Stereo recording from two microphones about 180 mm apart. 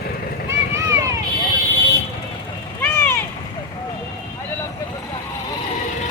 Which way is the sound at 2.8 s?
10° left (ahead or behind).